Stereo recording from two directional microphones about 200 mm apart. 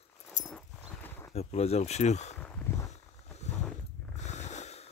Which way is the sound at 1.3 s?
30° left (ahead or behind).